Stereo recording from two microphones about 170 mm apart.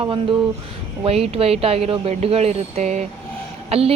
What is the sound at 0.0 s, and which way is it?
Speech, 30° right (ahead or behind).